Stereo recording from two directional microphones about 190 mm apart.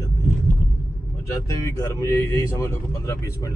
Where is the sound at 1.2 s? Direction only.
15° left (ahead or behind).